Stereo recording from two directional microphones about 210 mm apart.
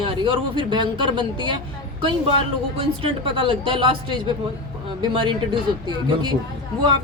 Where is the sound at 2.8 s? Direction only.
25° right (ahead or behind).